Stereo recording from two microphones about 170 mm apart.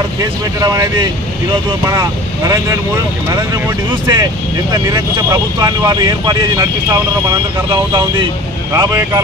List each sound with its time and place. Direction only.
0.6 s speech: 20° right (ahead or behind)
4.0 s speech: 20° right (ahead or behind)